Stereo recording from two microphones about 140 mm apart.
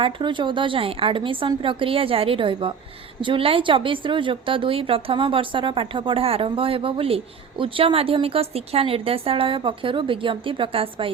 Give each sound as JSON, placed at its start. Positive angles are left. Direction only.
{"t": 0.0, "sound": "a woman's voice", "side_deg": -35}